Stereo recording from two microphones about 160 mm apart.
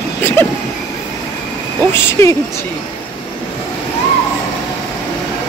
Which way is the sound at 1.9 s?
20° left (ahead or behind).